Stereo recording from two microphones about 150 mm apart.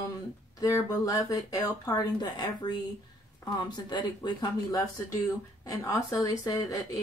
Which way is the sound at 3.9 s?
25° left (ahead or behind).